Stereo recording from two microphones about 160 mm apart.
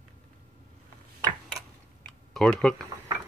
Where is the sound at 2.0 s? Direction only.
Centre (ahead or behind).